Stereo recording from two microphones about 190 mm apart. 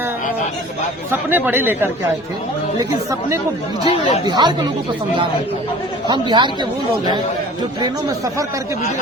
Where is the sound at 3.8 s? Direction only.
30° left (ahead or behind).